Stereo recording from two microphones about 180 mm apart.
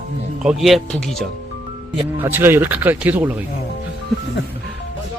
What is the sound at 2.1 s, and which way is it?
Speech, 10° right (ahead or behind).